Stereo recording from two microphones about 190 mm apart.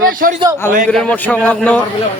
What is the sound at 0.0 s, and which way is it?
Speech, 50° right (ahead or behind).